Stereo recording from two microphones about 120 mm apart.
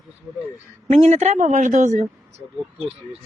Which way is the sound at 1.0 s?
65° right (ahead or behind).